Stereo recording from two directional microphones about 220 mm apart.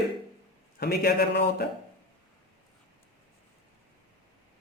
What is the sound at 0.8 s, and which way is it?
Speech, 45° left (ahead or behind).